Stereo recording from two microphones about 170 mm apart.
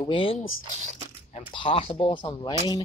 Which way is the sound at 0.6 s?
45° right (ahead or behind).